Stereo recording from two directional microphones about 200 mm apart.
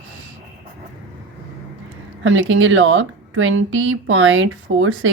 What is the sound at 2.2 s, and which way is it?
Speech, 75° right (ahead or behind).